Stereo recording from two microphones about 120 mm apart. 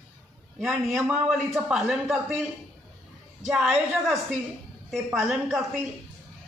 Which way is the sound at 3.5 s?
5° right (ahead or behind).